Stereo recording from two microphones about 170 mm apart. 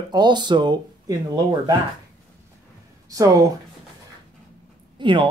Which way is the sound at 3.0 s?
20° right (ahead or behind).